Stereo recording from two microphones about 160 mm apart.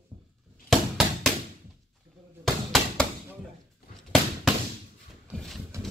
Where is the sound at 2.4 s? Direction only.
Centre (ahead or behind).